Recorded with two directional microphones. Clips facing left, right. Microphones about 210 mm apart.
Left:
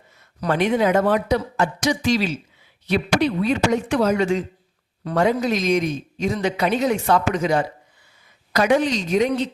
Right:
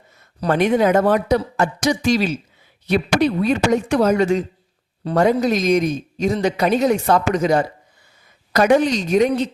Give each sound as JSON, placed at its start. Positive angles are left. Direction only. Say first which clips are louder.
{"t": 0.3, "sound": "a woman's voice", "louder": "right 3 dB", "side_deg": -40}